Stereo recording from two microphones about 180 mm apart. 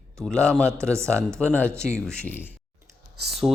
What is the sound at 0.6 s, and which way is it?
Speech, 15° right (ahead or behind).